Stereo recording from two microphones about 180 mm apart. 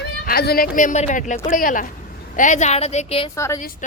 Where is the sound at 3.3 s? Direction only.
15° left (ahead or behind).